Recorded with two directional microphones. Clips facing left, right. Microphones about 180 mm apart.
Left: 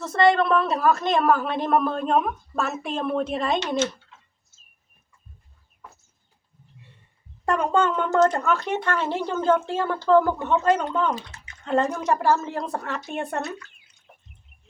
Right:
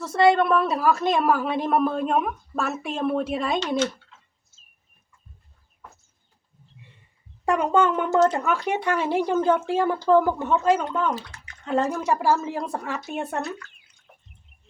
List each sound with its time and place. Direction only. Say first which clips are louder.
0.1 s a woman's voice: right 1 dB; 5° right (ahead or behind)
7.4 s a woman's voice: right 1 dB; 15° right (ahead or behind)
11.1 s speech: even; 25° left (ahead or behind)
11.6 s a woman's voice: left 1 dB; centre (ahead or behind)